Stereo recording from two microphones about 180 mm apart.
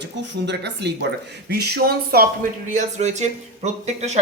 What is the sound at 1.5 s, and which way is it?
Speech, 60° right (ahead or behind).